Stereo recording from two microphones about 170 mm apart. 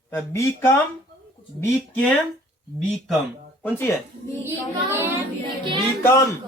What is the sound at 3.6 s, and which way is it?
Speech, 15° left (ahead or behind).